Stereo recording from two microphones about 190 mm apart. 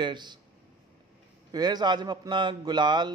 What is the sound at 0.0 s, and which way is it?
Speech, 25° right (ahead or behind).